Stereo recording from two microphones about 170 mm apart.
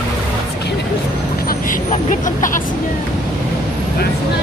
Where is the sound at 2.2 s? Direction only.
50° left (ahead or behind).